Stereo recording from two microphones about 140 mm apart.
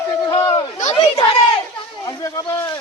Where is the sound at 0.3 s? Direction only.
40° left (ahead or behind).